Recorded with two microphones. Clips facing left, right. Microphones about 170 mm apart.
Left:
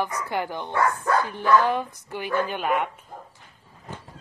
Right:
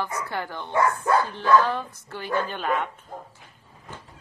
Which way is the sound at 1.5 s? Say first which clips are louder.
Even; 15° left (ahead or behind).